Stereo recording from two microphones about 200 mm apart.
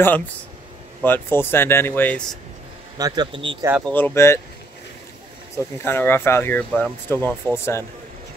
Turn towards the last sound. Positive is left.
turn(degrees=15)  # may be behind; listen again after turning